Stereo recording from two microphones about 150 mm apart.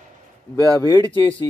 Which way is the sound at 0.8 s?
30° left (ahead or behind).